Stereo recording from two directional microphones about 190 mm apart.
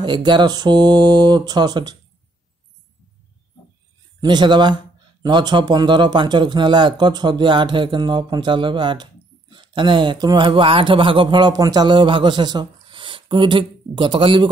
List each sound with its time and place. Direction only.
0.0 s speech: 25° right (ahead or behind)
4.2 s speech: 25° right (ahead or behind)